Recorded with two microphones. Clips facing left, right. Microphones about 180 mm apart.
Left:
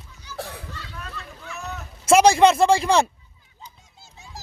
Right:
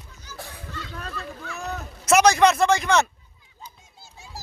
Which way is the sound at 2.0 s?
30° left (ahead or behind).